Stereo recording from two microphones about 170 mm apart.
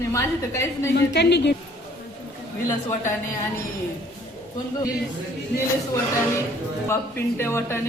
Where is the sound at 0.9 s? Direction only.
85° left.